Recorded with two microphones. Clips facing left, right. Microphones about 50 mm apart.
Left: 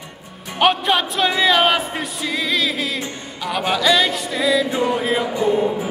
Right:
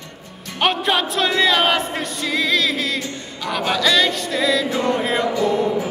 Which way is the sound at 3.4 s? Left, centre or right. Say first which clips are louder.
Left 1 dB; centre.